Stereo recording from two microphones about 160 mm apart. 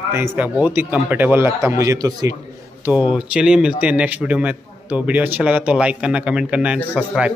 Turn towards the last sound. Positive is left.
turn(degrees=-10)  # may be behind; listen again after turning